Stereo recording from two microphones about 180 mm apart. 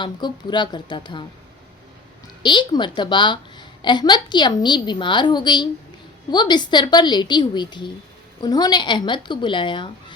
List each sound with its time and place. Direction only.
0.0 s a woman's voice: 25° left (ahead or behind)
2.4 s a woman's voice: 25° left (ahead or behind)